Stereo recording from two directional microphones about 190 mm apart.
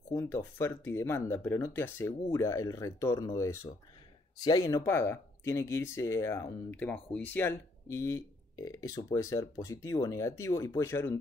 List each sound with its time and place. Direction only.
0.1 s speech: 10° left (ahead or behind)